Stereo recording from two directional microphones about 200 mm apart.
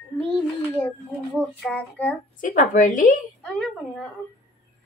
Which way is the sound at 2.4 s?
40° left (ahead or behind).